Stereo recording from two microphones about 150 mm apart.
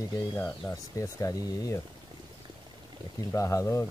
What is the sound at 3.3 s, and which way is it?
Speech, 20° left (ahead or behind).